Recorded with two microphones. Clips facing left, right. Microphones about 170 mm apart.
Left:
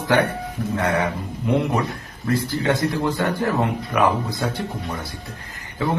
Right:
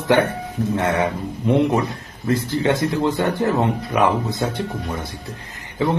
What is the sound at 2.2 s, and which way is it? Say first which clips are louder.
Speech: right 2 dB; 20° right (ahead or behind).